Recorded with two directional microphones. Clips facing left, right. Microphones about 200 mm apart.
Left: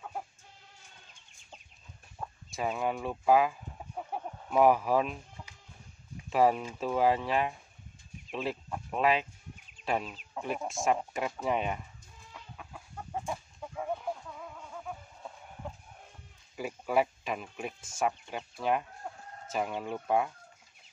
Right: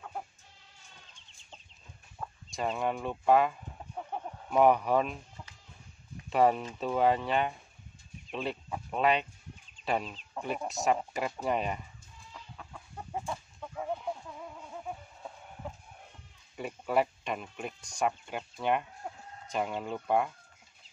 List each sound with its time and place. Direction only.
2.2 s chicken: 10° left (ahead or behind)
2.5 s speech: 5° left (ahead or behind)
4.1 s chicken: 5° left (ahead or behind)
6.3 s speech: centre (ahead or behind)
13.2 s chicken: 10° left (ahead or behind)
16.5 s speech: centre (ahead or behind)